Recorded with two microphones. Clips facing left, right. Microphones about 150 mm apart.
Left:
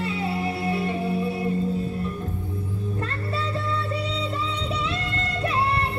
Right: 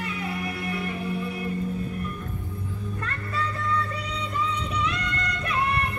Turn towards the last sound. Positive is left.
turn(degrees=30)  # may be behind; listen again after turning